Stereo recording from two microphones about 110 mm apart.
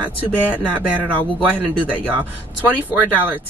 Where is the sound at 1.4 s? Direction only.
15° right (ahead or behind).